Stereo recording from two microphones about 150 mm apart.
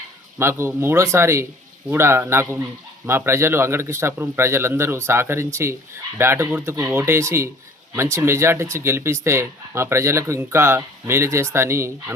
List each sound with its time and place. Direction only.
0.3 s speech: 15° right (ahead or behind)